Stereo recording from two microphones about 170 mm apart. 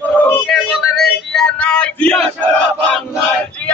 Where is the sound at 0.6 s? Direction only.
Centre (ahead or behind).